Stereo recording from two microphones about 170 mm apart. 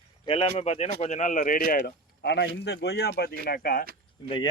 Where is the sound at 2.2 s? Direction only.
85° left; by 3.9 s 65° left (ahead or behind).